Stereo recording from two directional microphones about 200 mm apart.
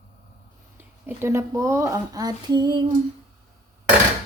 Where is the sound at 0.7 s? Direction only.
10° right (ahead or behind).